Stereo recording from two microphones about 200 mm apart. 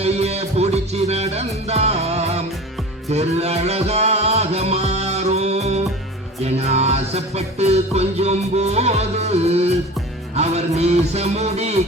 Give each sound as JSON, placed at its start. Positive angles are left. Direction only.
{"t": 0.0, "sound": "music", "side_deg": -30}